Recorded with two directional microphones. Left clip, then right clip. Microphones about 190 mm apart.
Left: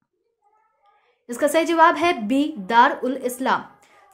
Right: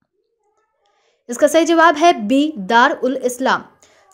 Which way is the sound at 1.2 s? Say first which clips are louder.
Right 6 dB; 25° right (ahead or behind).